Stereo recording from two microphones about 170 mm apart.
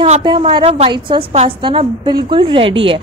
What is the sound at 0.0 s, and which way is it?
A woman's voice, 30° right (ahead or behind).